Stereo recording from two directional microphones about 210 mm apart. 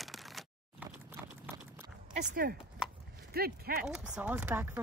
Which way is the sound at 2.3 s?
45° right (ahead or behind).